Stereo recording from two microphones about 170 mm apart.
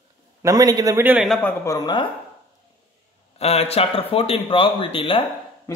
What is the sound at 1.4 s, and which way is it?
Speech, 20° left (ahead or behind).